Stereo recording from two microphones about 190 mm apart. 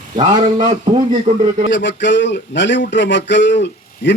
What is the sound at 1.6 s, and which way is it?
Speech, 70° left (ahead or behind).